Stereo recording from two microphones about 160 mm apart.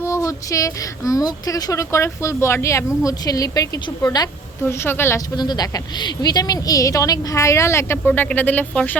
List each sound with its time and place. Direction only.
0.0 s speech: 20° left (ahead or behind)
4.6 s a woman's voice: 15° left (ahead or behind)
5.4 s speech: 25° left (ahead or behind); by 9.0 s 10° left (ahead or behind)